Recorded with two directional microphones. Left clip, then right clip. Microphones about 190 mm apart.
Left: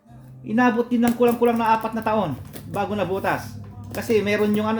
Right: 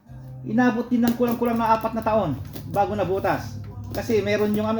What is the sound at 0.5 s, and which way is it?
Speech, 25° left (ahead or behind).